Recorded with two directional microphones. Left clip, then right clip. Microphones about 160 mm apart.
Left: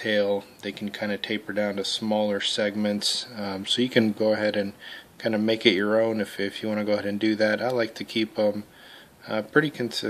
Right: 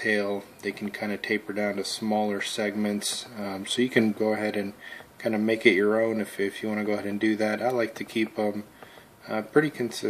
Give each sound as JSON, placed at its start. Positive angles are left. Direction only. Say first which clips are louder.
{"t": 0.0, "sound": "speech", "louder": "left 3 dB", "side_deg": 45}